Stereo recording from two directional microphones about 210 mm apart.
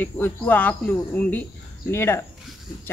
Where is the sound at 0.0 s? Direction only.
10° left (ahead or behind).